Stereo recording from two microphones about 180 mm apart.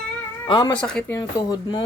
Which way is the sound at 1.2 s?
20° left (ahead or behind).